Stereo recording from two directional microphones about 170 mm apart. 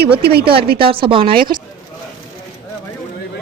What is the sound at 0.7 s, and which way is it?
Speech, 30° right (ahead or behind).